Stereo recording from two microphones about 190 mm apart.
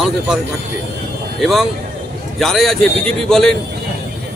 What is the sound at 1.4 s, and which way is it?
A man's voice, centre (ahead or behind).